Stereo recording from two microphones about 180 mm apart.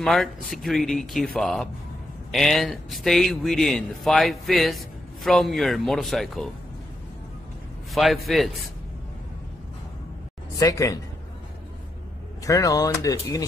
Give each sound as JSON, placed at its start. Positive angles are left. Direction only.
{"t": 0.0, "sound": "a man's voice", "side_deg": 0}
{"t": 7.9, "sound": "a man's voice", "side_deg": 0}
{"t": 10.5, "sound": "speech", "side_deg": 20}
{"t": 12.4, "sound": "speech", "side_deg": 20}